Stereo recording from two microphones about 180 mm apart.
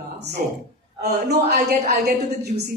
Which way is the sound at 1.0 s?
60° right (ahead or behind).